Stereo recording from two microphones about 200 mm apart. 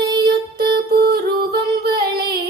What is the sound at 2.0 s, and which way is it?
Female singing, 50° right (ahead or behind).